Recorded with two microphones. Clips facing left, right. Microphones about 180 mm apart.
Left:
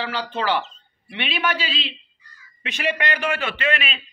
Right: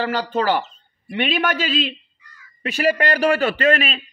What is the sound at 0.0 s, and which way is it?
A man's voice, 45° right (ahead or behind).